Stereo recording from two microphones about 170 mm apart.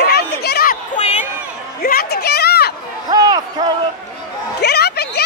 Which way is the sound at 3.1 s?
25° right (ahead or behind).